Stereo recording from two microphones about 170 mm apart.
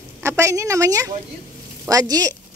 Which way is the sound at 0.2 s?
15° right (ahead or behind).